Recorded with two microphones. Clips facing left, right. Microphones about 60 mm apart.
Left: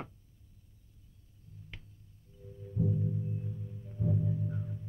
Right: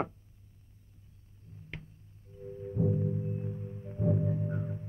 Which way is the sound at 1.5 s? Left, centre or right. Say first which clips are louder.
Right 2 dB; right.